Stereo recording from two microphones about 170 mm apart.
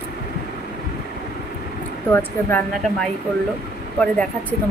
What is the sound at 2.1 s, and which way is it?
Speech, 10° left (ahead or behind).